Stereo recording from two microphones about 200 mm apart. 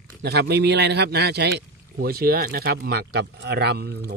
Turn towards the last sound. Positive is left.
turn(degrees=-55)  # may be behind; listen again after turning